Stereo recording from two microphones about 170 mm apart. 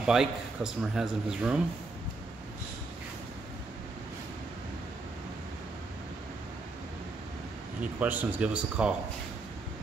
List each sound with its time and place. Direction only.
0.0 s a man's voice: 5° right (ahead or behind)
7.8 s speech: 10° right (ahead or behind)